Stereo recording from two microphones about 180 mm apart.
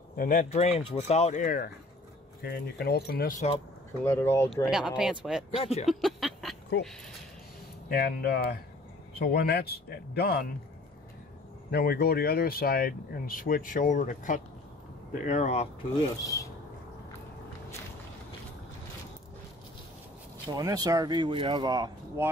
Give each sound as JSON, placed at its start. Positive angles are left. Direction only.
{"t": 0.1, "sound": "speech", "side_deg": 50}
{"t": 1.4, "sound": "speech", "side_deg": 50}
{"t": 3.3, "sound": "speech", "side_deg": 35}
{"t": 4.0, "sound": "speech", "side_deg": 15}
{"t": 4.6, "sound": "speech", "side_deg": -5}
{"t": 5.6, "sound": "speech", "side_deg": 35}
{"t": 5.9, "sound": "a sound", "side_deg": 0}
{"t": 6.7, "sound": "speech", "side_deg": 65}
{"t": 7.9, "sound": "speech", "side_deg": 60}
{"t": 11.7, "sound": "speech", "side_deg": 55}
{"t": 16.2, "sound": "speech", "side_deg": 20}
{"t": 20.4, "sound": "speech", "side_deg": -20}